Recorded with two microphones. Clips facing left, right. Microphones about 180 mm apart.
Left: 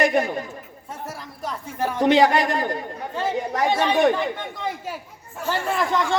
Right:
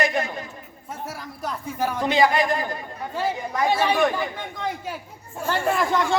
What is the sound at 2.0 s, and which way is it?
A man's voice, 70° left (ahead or behind).